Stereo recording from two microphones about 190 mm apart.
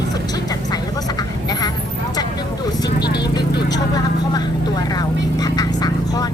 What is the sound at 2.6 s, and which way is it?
Vehicle, 20° left (ahead or behind).